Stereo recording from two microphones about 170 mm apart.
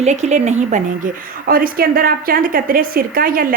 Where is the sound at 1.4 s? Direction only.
60° right (ahead or behind).